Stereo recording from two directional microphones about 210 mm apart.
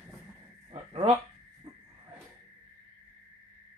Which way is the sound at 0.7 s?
25° right (ahead or behind).